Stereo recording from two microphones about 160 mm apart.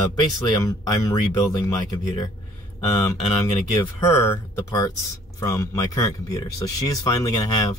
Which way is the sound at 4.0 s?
15° left (ahead or behind).